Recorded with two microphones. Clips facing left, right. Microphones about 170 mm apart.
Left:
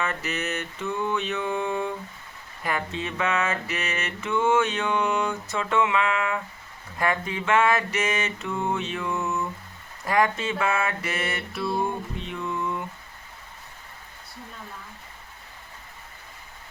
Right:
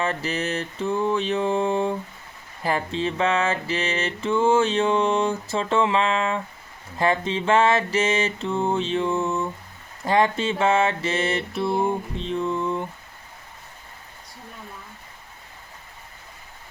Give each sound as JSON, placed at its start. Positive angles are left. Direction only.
{"t": 0.0, "sound": "mantra", "side_deg": -30}